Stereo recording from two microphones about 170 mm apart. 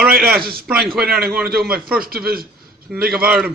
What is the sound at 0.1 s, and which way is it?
Speech, 65° right (ahead or behind).